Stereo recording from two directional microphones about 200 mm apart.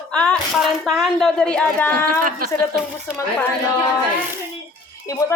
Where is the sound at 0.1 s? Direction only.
5° left (ahead or behind).